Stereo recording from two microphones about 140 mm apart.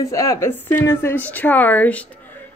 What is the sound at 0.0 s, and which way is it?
Speech, 20° left (ahead or behind).